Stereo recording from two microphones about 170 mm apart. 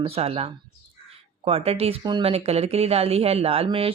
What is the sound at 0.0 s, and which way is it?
Speech, 35° right (ahead or behind).